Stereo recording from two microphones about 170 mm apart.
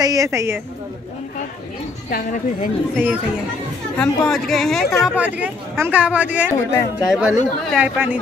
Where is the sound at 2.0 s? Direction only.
55° left (ahead or behind).